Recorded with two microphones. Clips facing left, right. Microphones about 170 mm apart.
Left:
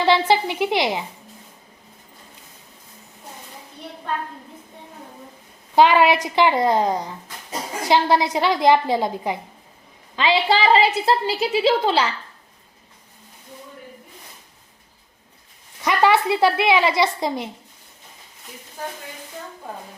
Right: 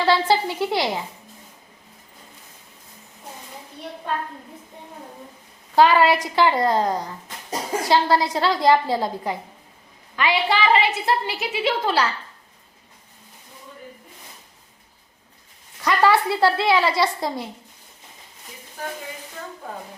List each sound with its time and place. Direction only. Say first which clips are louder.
0.0 s a woman's voice: left 1 dB; 20° left (ahead or behind)
5.7 s a woman's voice: left 1 dB; 20° left (ahead or behind)
15.8 s a woman's voice: left 1 dB; 20° left (ahead or behind)